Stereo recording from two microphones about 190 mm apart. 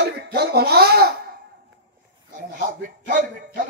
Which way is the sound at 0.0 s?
55° right (ahead or behind).